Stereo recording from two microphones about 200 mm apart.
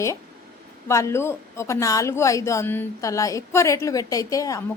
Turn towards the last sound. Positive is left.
turn(degrees=15)  # may be behind; listen again after turning